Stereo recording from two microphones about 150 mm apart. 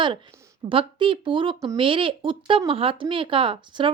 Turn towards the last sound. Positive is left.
turn(degrees=-35)  # may be behind; listen again after turning